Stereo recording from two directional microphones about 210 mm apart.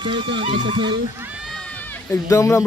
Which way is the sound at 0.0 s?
25° right (ahead or behind).